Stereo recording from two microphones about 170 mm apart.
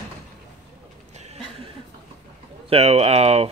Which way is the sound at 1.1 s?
40° right (ahead or behind).